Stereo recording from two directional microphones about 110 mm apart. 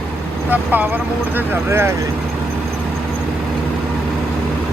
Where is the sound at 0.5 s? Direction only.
15° right (ahead or behind).